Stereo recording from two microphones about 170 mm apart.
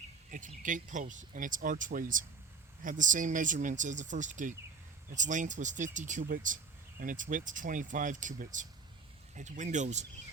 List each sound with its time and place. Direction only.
0.3 s speech: 50° right (ahead or behind)